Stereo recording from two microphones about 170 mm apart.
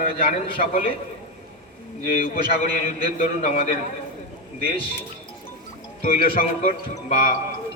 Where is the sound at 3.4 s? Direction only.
40° left (ahead or behind).